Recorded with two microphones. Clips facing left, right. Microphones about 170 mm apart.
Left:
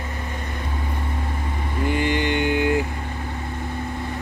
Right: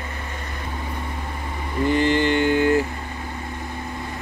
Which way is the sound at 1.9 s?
15° left (ahead or behind).